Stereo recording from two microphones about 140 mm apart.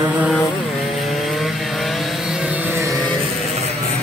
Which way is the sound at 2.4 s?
10° right (ahead or behind).